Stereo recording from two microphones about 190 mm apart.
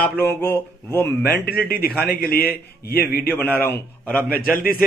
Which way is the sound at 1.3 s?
55° left (ahead or behind).